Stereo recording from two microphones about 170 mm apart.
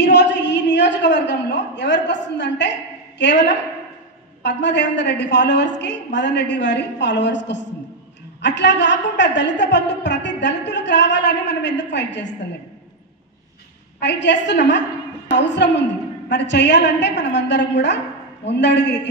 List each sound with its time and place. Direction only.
0.0 s a sound: 90° left
4.4 s a woman's voice: 90° left
13.9 s a woman's voice: 90° left